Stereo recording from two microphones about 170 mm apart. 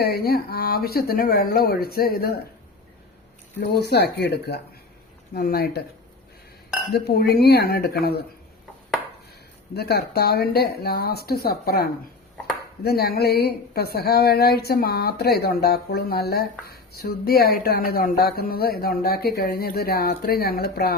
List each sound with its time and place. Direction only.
0.0 s speech: 65° left (ahead or behind)
3.6 s speech: 80° left
5.3 s speech: 65° left (ahead or behind)
6.9 s speech: 70° left (ahead or behind)
9.7 s speech: 70° left (ahead or behind)